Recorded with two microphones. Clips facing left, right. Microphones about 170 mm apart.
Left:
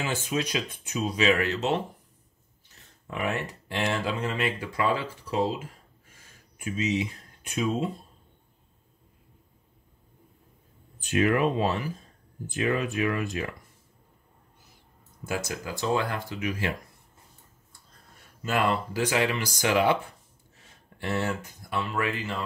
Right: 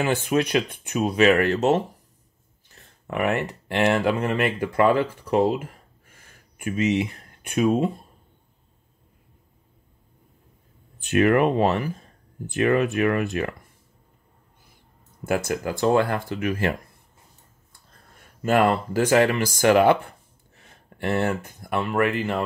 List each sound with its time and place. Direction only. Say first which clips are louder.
0.0 s speech: right 7 dB; 60° right (ahead or behind)
3.1 s speech: right 6 dB; 60° right (ahead or behind)
6.1 s a sound: right 4 dB; 60° right (ahead or behind)
11.0 s speech: right 5 dB; 60° right (ahead or behind)
15.2 s speech: right 8 dB; 55° right (ahead or behind)
18.4 s speech: right 6 dB; 50° right (ahead or behind)